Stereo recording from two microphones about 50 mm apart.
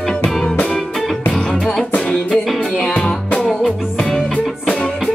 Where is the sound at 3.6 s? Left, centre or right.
Centre.